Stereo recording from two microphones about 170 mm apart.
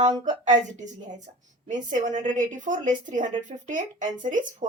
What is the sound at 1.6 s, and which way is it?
A woman's voice, 50° right (ahead or behind).